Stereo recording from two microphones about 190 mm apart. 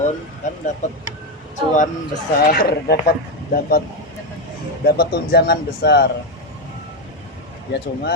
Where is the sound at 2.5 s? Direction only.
50° left (ahead or behind).